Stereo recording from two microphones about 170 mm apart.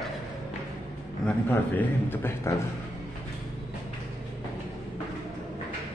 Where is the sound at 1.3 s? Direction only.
10° left (ahead or behind).